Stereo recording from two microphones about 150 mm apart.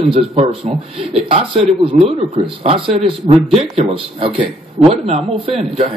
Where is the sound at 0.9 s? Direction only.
35° right (ahead or behind).